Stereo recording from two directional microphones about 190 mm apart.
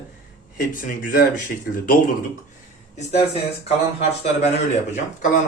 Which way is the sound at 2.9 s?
35° left (ahead or behind).